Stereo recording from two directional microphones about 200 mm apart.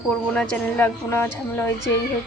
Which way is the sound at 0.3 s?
5° left (ahead or behind).